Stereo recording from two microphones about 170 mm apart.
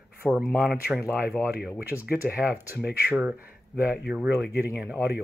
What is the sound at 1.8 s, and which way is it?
Speech, 10° right (ahead or behind).